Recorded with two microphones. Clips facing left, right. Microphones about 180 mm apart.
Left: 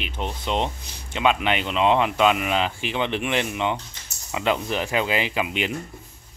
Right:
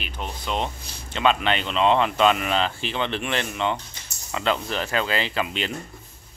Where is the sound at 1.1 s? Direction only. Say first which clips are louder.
Even; 10° left (ahead or behind).